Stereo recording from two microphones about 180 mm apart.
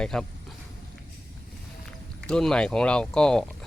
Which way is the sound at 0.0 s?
5° left (ahead or behind).